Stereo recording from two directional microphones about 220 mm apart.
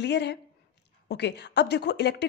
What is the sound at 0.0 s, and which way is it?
Speech, 50° left (ahead or behind).